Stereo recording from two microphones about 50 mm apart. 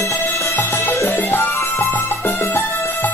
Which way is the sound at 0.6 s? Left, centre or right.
Left.